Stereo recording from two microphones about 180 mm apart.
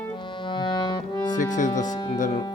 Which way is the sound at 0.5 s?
25° left (ahead or behind).